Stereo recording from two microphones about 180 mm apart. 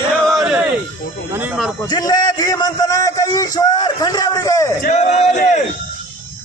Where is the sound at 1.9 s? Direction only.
20° left (ahead or behind).